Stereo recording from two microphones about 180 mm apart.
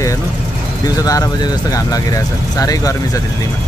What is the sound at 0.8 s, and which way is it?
Speech, 20° left (ahead or behind).